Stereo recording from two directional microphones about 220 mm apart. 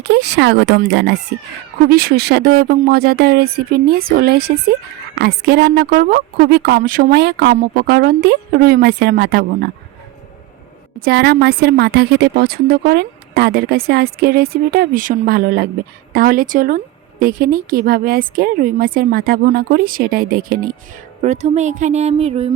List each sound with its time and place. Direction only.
0.0 s a woman's voice: 50° right (ahead or behind)
11.0 s a woman's voice: 50° right (ahead or behind); by 22.4 s 30° right (ahead or behind)